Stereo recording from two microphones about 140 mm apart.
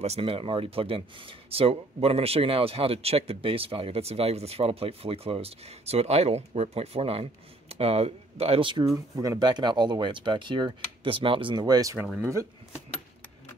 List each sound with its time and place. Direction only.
0.0 s speech: 45° right (ahead or behind)
8.9 s speech: 25° right (ahead or behind)